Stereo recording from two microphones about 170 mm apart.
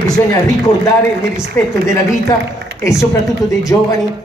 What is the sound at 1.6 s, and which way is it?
Speech, 15° left (ahead or behind).